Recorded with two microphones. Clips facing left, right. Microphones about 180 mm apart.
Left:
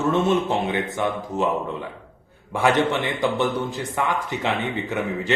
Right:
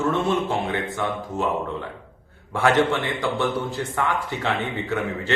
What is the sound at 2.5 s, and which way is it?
A man's voice, 20° left (ahead or behind).